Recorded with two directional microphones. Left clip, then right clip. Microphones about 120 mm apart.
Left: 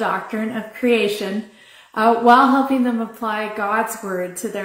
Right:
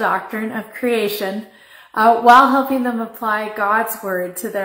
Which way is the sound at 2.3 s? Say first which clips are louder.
Right 3 dB; 15° left (ahead or behind).